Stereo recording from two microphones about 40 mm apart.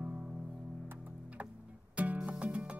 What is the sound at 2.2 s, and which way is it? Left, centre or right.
Music, right.